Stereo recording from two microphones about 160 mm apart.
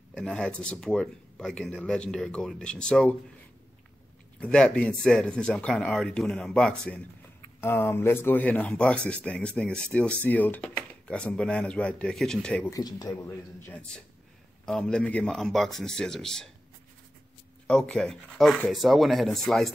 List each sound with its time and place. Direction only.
0.1 s speech: 5° left (ahead or behind)
4.4 s speech: 5° left (ahead or behind)
12.6 s speech: 25° left (ahead or behind)
14.7 s speech: 5° left (ahead or behind)
17.6 s speech: 5° left (ahead or behind)